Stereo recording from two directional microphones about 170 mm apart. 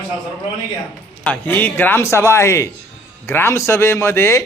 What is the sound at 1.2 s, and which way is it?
A man's voice, 10° left (ahead or behind).